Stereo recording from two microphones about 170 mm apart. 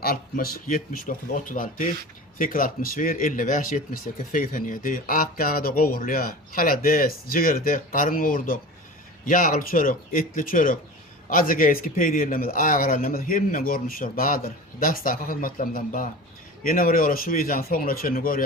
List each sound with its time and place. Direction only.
0.0 s speech: 60° left (ahead or behind)